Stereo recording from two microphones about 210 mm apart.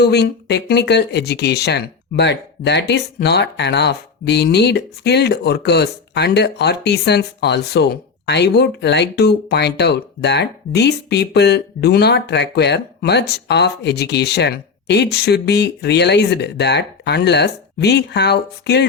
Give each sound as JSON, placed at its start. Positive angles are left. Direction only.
{"t": 0.0, "sound": "speech", "side_deg": 50}